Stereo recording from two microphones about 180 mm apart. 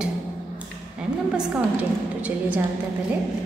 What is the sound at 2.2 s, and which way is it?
Speech, 10° right (ahead or behind).